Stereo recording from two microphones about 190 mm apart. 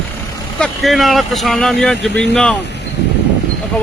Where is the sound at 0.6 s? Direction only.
Centre (ahead or behind).